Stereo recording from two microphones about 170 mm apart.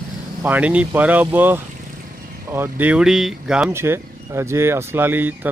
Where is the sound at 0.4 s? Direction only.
10° right (ahead or behind).